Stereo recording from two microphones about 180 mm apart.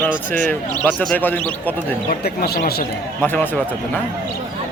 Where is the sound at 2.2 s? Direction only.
60° left (ahead or behind).